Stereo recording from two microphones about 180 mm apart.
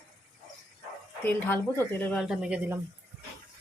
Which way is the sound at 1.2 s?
10° left (ahead or behind).